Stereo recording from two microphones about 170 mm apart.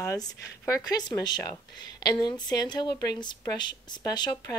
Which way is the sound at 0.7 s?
20° left (ahead or behind).